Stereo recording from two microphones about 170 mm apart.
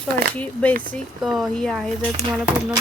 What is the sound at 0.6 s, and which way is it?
A woman's voice, 5° left (ahead or behind).